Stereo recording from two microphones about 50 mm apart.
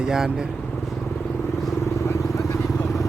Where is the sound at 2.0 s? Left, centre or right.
Left.